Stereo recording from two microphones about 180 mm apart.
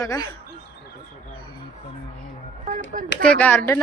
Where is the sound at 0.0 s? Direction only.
20° left (ahead or behind).